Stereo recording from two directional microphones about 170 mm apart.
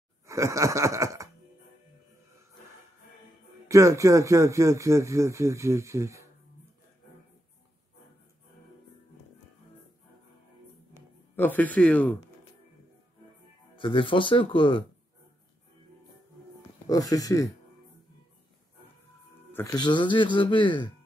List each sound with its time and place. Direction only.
0.3 s a sound: 20° right (ahead or behind)
3.6 s speech: 15° right (ahead or behind)
11.3 s speech: 10° left (ahead or behind)
13.7 s speech: 30° left (ahead or behind)
16.8 s speech: 20° left (ahead or behind)
19.5 s speech: 20° left (ahead or behind)